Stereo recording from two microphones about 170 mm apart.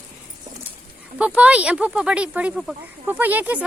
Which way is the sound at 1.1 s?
5° right (ahead or behind).